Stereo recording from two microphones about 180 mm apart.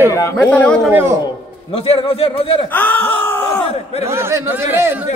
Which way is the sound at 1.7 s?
30° left (ahead or behind).